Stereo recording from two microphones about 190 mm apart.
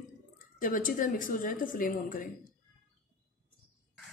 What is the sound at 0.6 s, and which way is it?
A woman's voice, 45° left (ahead or behind).